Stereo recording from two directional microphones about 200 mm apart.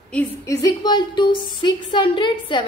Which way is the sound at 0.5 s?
15° left (ahead or behind).